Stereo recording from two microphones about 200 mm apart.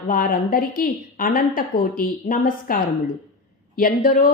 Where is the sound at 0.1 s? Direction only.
45° left (ahead or behind).